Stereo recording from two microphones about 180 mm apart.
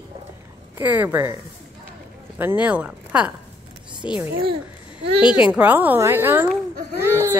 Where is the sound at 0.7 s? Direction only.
10° right (ahead or behind).